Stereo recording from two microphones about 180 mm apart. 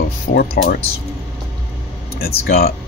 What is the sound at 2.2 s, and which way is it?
Speech, 60° left (ahead or behind).